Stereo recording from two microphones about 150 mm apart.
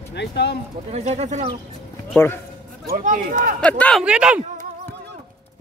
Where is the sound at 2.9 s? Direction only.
60° right (ahead or behind).